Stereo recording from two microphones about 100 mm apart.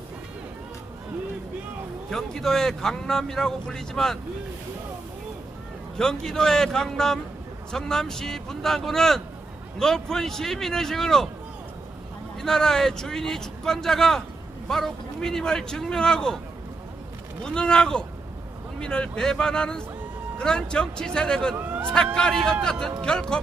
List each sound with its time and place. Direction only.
2.0 s speech: 5° left (ahead or behind)
6.0 s speech: 5° left (ahead or behind)
12.4 s speech: 5° left (ahead or behind)
17.4 s speech: 10° left (ahead or behind)
21.5 s hubbub: 20° right (ahead or behind)
21.9 s speech: 5° left (ahead or behind)